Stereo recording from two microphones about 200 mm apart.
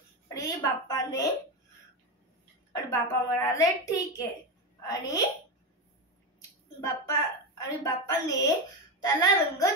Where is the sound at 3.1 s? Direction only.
15° left (ahead or behind).